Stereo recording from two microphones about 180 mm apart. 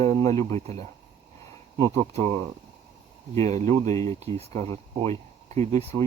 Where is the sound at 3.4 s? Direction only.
35° right (ahead or behind).